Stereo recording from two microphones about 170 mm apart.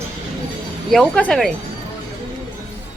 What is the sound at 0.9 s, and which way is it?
Speech, 5° left (ahead or behind).